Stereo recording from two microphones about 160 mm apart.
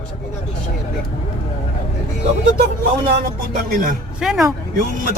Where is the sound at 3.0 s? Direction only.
70° right (ahead or behind).